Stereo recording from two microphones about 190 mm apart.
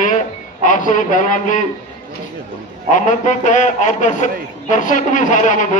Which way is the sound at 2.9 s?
40° left (ahead or behind).